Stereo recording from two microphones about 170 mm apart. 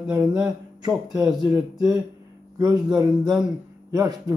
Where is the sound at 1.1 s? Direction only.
20° right (ahead or behind).